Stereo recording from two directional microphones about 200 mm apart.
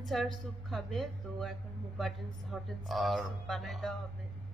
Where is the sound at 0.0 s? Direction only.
Centre (ahead or behind).